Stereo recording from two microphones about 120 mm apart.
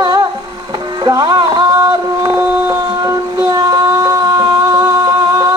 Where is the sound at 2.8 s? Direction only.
30° right (ahead or behind).